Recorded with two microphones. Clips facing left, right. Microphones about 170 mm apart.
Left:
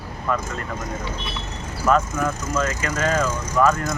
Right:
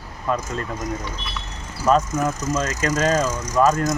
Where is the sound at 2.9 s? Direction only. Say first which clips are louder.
Right 3 dB; 55° left (ahead or behind).